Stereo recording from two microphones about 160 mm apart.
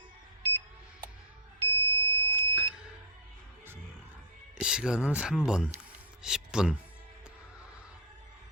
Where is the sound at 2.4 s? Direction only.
15° left (ahead or behind).